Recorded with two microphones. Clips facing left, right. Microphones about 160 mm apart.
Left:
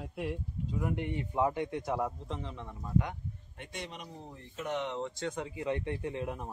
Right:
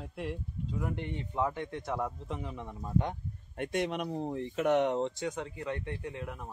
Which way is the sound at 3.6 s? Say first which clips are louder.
Right 12 dB; 55° right (ahead or behind).